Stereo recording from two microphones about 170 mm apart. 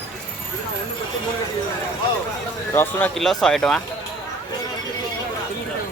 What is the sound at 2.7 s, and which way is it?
Speech, 10° left (ahead or behind).